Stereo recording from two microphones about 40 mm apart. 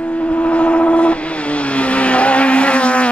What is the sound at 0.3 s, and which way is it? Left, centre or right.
Vehicle, left.